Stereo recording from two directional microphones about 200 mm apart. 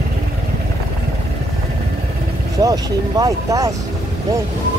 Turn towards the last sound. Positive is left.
turn(degrees=-20)  # may be behind; listen again after turning